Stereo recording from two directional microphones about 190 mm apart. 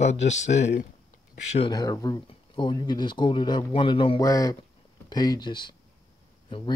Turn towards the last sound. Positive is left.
turn(degrees=25)  # may be behind; listen again after turning